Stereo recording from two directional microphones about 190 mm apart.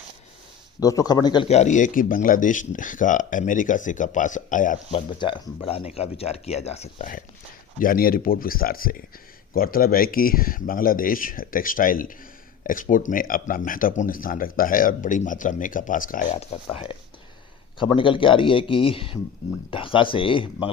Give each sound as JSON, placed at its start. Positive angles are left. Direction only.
{"t": 0.8, "sound": "speech", "side_deg": 20}
{"t": 1.5, "sound": "speech", "side_deg": 35}
{"t": 4.9, "sound": "speech", "side_deg": 25}